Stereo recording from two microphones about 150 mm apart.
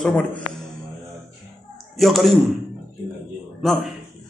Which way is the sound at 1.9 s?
Centre (ahead or behind).